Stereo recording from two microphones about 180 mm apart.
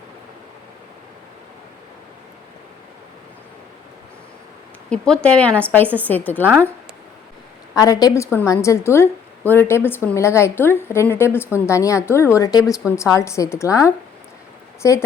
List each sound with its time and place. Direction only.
4.9 s a woman's voice: 5° left (ahead or behind)
7.8 s a woman's voice: 20° left (ahead or behind)